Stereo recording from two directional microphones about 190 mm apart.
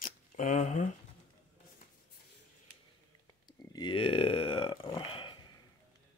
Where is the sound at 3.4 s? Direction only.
25° left (ahead or behind).